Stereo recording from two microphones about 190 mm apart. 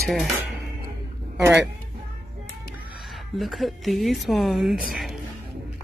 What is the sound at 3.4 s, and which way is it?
Speech, centre (ahead or behind).